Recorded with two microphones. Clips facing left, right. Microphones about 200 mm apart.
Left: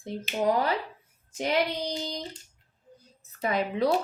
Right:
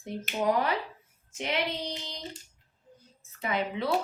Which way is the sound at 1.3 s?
35° left (ahead or behind).